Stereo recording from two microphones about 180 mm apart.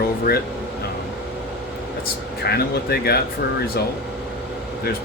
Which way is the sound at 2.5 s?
60° left (ahead or behind).